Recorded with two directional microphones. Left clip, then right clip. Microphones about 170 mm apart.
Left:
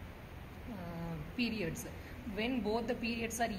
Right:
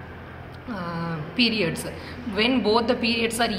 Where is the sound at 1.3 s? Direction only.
65° left (ahead or behind).